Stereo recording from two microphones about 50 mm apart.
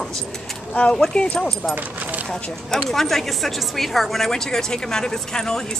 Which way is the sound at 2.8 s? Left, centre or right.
Centre.